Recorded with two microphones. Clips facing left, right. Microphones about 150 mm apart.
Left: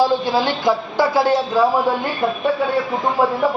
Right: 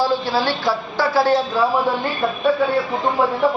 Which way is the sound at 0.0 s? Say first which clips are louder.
Left 2 dB; 15° left (ahead or behind).